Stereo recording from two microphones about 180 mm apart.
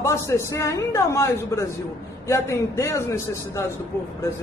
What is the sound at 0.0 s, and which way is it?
A woman's voice, 15° left (ahead or behind).